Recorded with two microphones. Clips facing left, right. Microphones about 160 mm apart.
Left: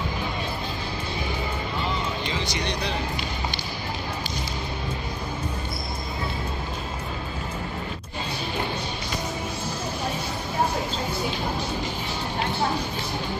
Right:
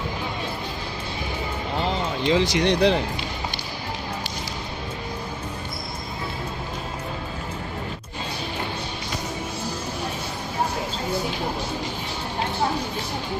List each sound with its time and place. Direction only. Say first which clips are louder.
2.2 s speech: right 9 dB; 90° right